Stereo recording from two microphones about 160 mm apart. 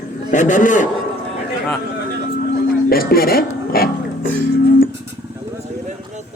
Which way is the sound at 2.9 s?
65° left (ahead or behind).